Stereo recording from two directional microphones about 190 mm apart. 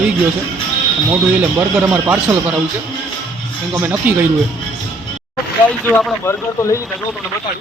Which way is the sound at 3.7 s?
10° right (ahead or behind).